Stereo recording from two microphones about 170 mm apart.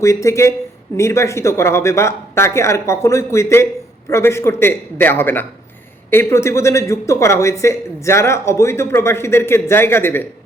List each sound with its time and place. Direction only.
0.0 s speech: 15° left (ahead or behind)